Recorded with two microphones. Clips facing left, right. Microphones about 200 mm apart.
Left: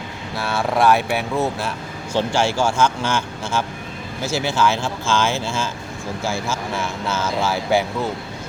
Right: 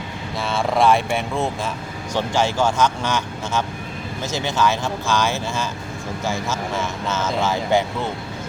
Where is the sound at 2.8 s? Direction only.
20° right (ahead or behind).